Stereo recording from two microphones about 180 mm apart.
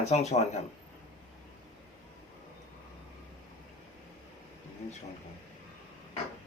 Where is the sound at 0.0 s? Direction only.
40° left (ahead or behind).